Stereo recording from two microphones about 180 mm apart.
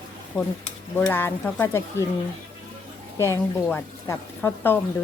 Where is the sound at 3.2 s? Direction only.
15° left (ahead or behind).